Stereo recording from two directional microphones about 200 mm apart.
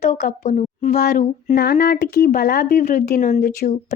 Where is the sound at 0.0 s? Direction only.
35° left (ahead or behind).